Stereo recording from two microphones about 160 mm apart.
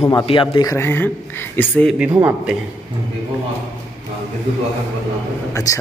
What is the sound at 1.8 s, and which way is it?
Speech, 5° right (ahead or behind).